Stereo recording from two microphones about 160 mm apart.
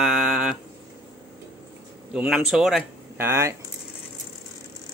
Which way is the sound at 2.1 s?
5° right (ahead or behind).